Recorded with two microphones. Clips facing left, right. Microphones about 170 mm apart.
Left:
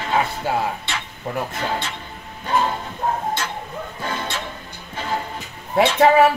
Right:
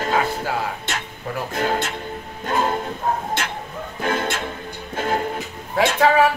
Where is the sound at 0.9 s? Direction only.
45° right (ahead or behind).